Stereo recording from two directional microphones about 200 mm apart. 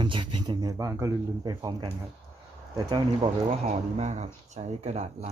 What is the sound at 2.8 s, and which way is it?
Speech, 20° right (ahead or behind).